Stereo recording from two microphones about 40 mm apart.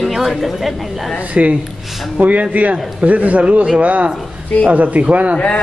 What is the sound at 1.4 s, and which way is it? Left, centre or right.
A man's voice, right.